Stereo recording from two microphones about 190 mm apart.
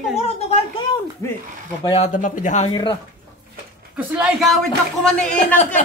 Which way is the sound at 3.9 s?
5° right (ahead or behind).